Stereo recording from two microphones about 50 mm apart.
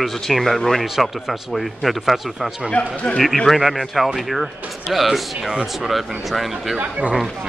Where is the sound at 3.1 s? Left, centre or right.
Centre.